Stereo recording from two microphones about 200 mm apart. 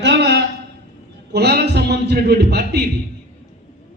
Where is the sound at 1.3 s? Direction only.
55° right (ahead or behind).